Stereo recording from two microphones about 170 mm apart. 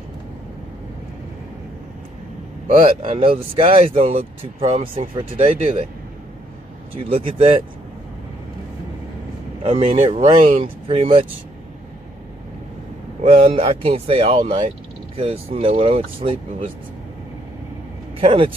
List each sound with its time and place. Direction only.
3.1 s speech: 30° right (ahead or behind)
7.1 s speech: 30° right (ahead or behind)
9.6 s speech: 35° right (ahead or behind)
13.2 s speech: 35° right (ahead or behind)
18.2 s speech: 35° right (ahead or behind)